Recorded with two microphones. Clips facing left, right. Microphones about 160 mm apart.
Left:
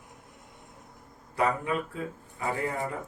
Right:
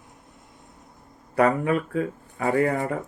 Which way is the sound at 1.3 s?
65° right (ahead or behind).